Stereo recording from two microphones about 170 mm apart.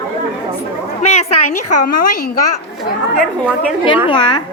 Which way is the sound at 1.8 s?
60° left (ahead or behind).